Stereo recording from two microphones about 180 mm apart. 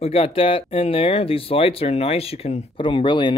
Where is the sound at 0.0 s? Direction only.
35° left (ahead or behind).